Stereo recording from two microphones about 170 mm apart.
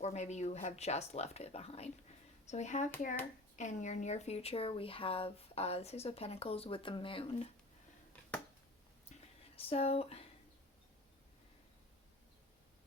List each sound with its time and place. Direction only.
0.0 s speech: 40° left (ahead or behind)
9.6 s speech: 35° left (ahead or behind)